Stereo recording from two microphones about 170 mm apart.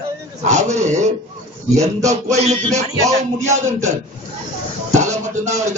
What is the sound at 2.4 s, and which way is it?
Music, 40° right (ahead or behind).